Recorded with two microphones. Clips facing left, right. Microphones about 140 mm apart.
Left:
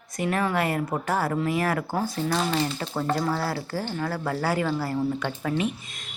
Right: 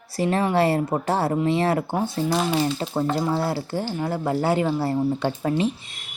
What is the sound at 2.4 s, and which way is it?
Speech, 15° right (ahead or behind).